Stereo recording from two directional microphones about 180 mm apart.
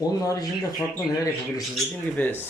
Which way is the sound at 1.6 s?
Centre (ahead or behind).